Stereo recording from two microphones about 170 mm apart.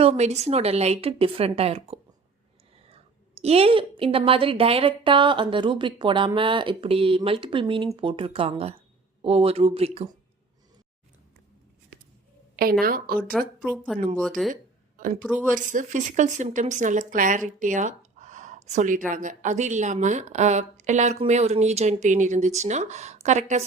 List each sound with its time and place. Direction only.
0.0 s a woman's voice: 40° right (ahead or behind)
12.8 s a woman's voice: 60° right (ahead or behind)
13.4 s speech: centre (ahead or behind)
14.5 s a sound: 50° right (ahead or behind)
15.2 s a woman's voice: 10° right (ahead or behind)
15.5 s speech: 50° right (ahead or behind)